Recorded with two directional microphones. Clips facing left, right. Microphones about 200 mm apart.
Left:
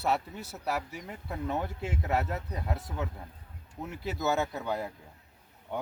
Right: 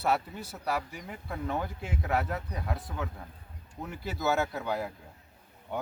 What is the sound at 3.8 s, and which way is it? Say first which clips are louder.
Speech: even; centre (ahead or behind).